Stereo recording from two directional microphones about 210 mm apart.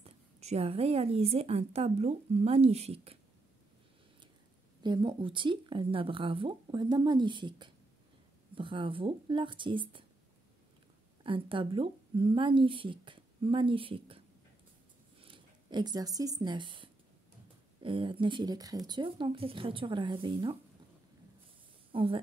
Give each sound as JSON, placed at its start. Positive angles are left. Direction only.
{"t": 0.0, "sound": "a woman's voice", "side_deg": -30}
{"t": 4.8, "sound": "a woman's voice", "side_deg": -20}
{"t": 11.2, "sound": "a woman's voice", "side_deg": -25}
{"t": 21.9, "sound": "speech", "side_deg": -25}